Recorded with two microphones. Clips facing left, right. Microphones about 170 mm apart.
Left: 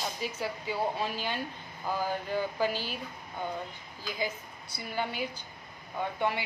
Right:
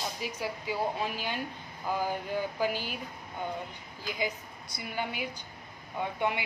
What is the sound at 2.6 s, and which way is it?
Speech, 15° right (ahead or behind).